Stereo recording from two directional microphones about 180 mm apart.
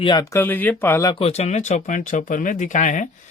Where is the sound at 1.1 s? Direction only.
35° left (ahead or behind).